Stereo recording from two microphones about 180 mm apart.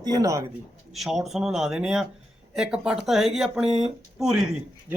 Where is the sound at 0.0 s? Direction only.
20° right (ahead or behind).